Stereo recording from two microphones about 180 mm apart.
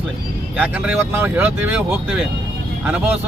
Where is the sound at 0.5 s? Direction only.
10° right (ahead or behind).